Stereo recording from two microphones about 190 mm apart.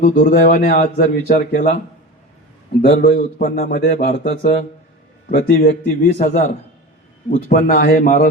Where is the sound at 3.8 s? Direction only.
35° left (ahead or behind).